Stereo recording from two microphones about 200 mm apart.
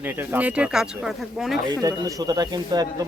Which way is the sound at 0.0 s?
10° right (ahead or behind).